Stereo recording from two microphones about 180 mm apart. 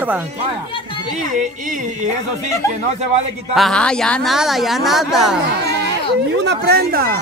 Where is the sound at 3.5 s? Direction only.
5° left (ahead or behind).